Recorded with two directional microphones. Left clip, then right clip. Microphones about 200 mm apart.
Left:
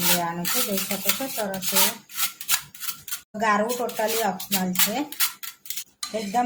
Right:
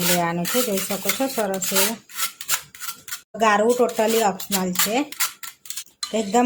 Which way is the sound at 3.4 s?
40° right (ahead or behind).